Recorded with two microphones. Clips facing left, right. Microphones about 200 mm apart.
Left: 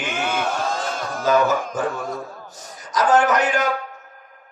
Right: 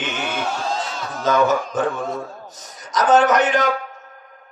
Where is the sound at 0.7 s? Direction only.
50° left (ahead or behind).